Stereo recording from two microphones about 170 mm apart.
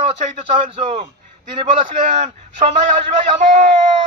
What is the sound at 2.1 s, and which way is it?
Speech, 35° right (ahead or behind).